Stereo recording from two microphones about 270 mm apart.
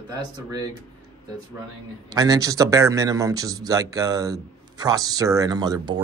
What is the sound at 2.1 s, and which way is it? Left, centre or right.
Speech, centre.